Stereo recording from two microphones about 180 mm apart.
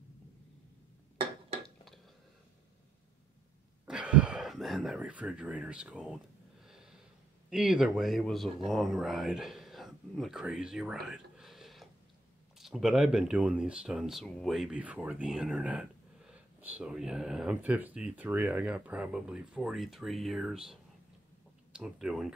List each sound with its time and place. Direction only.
3.8 s speech: 5° right (ahead or behind)
6.6 s a sound: centre (ahead or behind)
7.4 s speech: 5° right (ahead or behind)